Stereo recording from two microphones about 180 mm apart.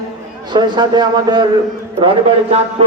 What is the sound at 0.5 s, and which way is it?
A man's voice, 25° right (ahead or behind).